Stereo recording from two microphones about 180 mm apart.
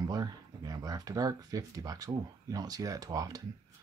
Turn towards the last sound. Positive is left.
turn(degrees=-20)  # may be behind; listen again after turning